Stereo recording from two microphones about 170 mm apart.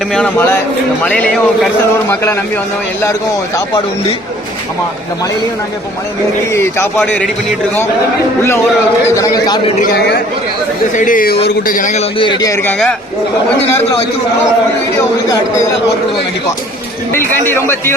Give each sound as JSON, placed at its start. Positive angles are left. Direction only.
{"t": 0.1, "sound": "a man's voice", "side_deg": 10}
{"t": 6.5, "sound": "a man's voice", "side_deg": 15}
{"t": 7.0, "sound": "a man's voice", "side_deg": 5}
{"t": 9.0, "sound": "a man's voice", "side_deg": 20}
{"t": 10.9, "sound": "speech", "side_deg": 50}
{"t": 12.2, "sound": "a man's voice", "side_deg": 25}
{"t": 12.6, "sound": "a man's voice", "side_deg": 5}
{"t": 17.1, "sound": "a man's voice", "side_deg": 15}